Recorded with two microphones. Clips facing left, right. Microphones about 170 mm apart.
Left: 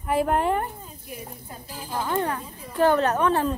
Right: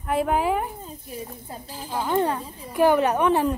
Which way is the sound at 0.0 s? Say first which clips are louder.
Even; centre (ahead or behind).